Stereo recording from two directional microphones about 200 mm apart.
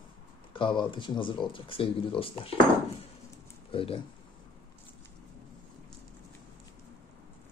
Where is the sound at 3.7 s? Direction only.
25° left (ahead or behind).